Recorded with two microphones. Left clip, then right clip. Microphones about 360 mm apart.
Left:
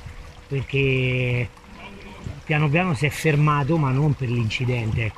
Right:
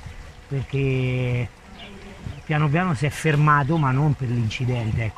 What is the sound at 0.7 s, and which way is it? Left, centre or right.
Speech, centre.